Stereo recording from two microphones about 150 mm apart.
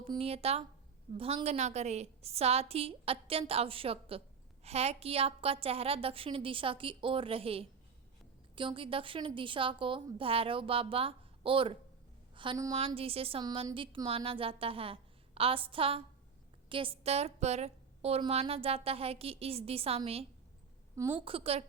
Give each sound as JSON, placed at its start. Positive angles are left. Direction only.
{"t": 0.2, "sound": "a woman's voice", "side_deg": -40}
{"t": 12.7, "sound": "a woman's voice", "side_deg": -40}
{"t": 13.4, "sound": "a woman's voice", "side_deg": -30}
{"t": 21.2, "sound": "a woman's voice", "side_deg": -40}